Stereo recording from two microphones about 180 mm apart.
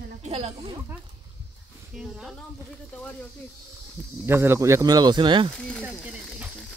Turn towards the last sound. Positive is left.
turn(degrees=0)  # may be behind; listen again after turning